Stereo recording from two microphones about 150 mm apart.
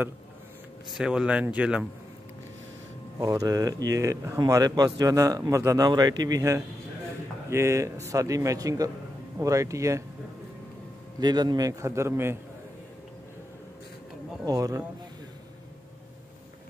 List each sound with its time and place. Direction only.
0.9 s speech: 5° right (ahead or behind)
3.2 s a man's voice: 25° right (ahead or behind)
11.1 s a man's voice: 30° right (ahead or behind)
14.4 s a man's voice: 25° right (ahead or behind)